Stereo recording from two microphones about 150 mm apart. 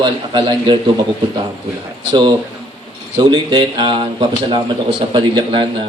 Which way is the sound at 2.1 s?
30° right (ahead or behind).